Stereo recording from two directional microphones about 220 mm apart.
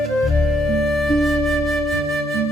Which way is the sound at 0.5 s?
Centre (ahead or behind).